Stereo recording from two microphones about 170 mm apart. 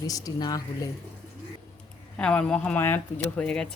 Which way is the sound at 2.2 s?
5° left (ahead or behind).